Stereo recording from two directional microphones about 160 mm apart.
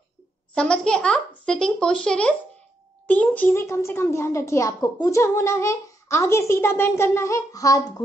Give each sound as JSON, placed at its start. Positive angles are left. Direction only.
{"t": 0.6, "sound": "a child's voice", "side_deg": 5}